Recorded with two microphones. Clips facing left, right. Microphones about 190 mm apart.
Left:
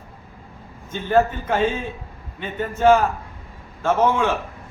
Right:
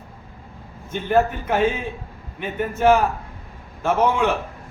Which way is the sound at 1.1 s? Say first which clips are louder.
Left 1 dB; 10° right (ahead or behind).